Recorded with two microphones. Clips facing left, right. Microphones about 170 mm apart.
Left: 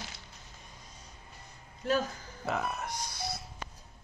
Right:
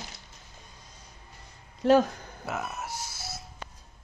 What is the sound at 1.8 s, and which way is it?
Speech, 75° right (ahead or behind).